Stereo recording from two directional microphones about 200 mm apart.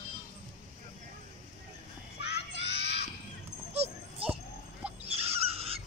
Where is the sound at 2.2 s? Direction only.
55° left (ahead or behind).